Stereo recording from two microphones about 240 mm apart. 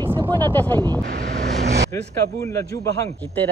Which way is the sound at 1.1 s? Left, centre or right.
Right.